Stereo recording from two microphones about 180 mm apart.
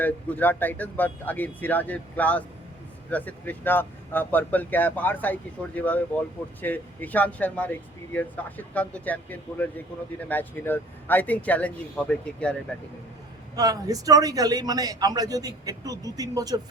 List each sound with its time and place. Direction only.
0.0 s speech: 10° left (ahead or behind)
13.6 s a man's voice: 20° right (ahead or behind)